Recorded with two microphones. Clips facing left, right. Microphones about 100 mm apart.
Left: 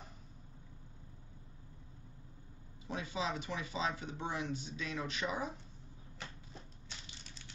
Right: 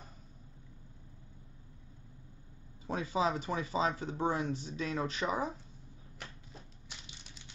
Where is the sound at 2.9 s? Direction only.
45° right (ahead or behind).